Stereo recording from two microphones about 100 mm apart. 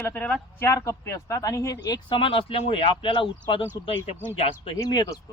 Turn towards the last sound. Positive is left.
turn(degrees=40)  # may be behind; listen again after turning